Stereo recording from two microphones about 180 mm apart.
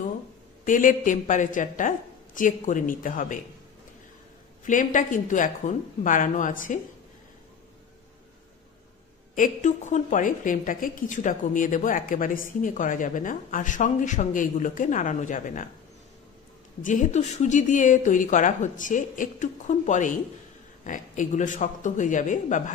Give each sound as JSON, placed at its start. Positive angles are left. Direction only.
{"t": 0.7, "sound": "a woman's voice", "side_deg": 45}
{"t": 4.6, "sound": "a woman's voice", "side_deg": 45}
{"t": 9.3, "sound": "a woman's voice", "side_deg": 45}
{"t": 16.8, "sound": "a woman's voice", "side_deg": 45}